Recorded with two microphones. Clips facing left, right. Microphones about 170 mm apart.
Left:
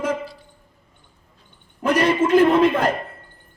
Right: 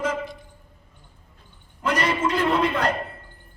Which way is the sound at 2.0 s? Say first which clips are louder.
Left 9 dB; 50° left (ahead or behind).